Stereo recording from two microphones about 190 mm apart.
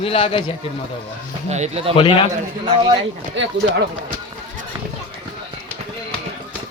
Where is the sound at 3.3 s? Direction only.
70° right (ahead or behind).